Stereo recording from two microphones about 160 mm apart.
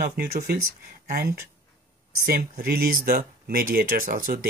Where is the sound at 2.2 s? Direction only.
70° right (ahead or behind).